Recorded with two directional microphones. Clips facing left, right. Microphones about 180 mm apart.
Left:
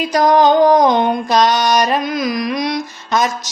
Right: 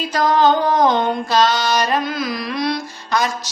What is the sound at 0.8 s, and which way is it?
Carnatic music, 15° left (ahead or behind).